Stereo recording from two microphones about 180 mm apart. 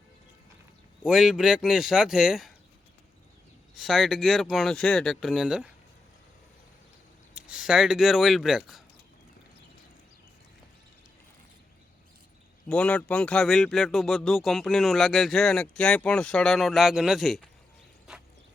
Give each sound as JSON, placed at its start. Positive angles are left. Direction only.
{"t": 1.0, "sound": "speech", "side_deg": 0}
{"t": 3.8, "sound": "speech", "side_deg": 0}
{"t": 7.3, "sound": "speech", "side_deg": -5}
{"t": 12.6, "sound": "speech", "side_deg": 5}